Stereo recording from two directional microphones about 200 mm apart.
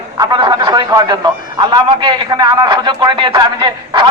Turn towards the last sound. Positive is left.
turn(degrees=-25)  # may be behind; listen again after turning